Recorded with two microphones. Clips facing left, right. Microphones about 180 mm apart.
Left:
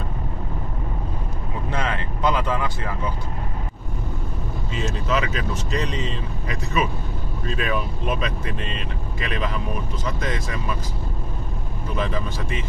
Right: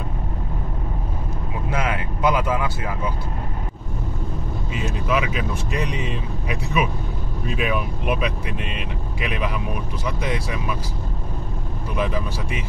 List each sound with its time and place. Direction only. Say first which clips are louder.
1.7 s vehicle: right 2 dB; 10° right (ahead or behind)
4.7 s speech: right 1 dB; 10° right (ahead or behind)
11.9 s speech: right 2 dB; 10° right (ahead or behind)